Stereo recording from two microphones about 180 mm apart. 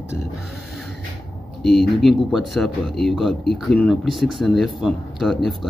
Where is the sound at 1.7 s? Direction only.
Centre (ahead or behind).